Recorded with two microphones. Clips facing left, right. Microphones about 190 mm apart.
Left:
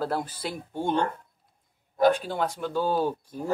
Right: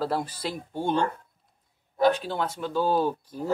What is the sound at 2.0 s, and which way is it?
Speech, 45° left (ahead or behind).